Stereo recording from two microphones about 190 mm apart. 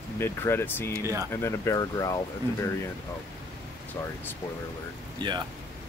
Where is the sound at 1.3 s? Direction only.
15° left (ahead or behind).